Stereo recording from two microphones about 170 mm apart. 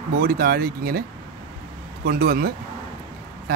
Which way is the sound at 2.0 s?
60° right (ahead or behind).